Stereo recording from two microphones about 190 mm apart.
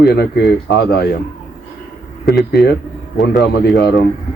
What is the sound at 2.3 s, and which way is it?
Speech, centre (ahead or behind).